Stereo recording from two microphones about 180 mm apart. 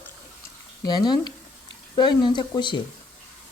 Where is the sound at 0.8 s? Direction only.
20° left (ahead or behind).